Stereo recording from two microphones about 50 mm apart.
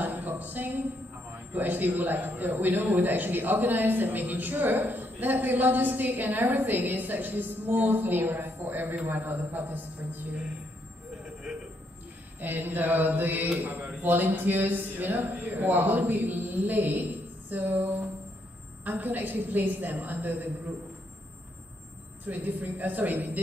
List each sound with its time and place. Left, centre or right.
0.0 s music: right
1.5 s a man's voice: right
12.4 s a man's voice: right
22.2 s a man's voice: right